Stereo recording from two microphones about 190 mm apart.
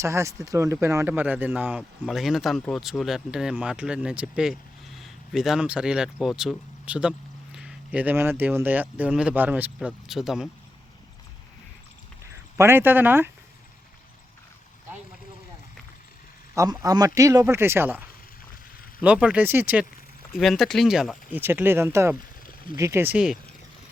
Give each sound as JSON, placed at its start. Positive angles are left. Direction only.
{"t": 0.0, "sound": "speech", "side_deg": -15}
{"t": 12.2, "sound": "speech", "side_deg": -15}
{"t": 16.6, "sound": "a man's voice", "side_deg": -20}
{"t": 19.0, "sound": "speech", "side_deg": -5}
{"t": 22.4, "sound": "a sound", "side_deg": 50}
{"t": 22.8, "sound": "speech", "side_deg": -15}